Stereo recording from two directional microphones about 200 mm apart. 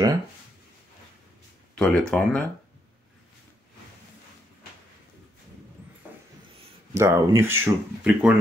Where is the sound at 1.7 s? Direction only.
5° left (ahead or behind).